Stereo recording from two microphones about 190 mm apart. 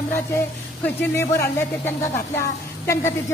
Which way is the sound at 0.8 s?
15° left (ahead or behind).